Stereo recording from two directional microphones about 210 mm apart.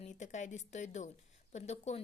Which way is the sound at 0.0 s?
35° left (ahead or behind).